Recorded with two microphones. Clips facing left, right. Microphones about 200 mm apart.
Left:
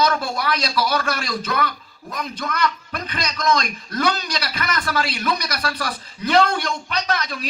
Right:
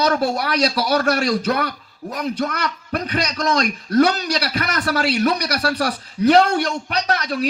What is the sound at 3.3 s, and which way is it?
Speech, 35° right (ahead or behind).